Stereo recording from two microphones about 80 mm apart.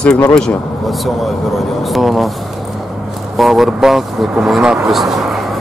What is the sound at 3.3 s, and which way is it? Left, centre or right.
Speech, centre.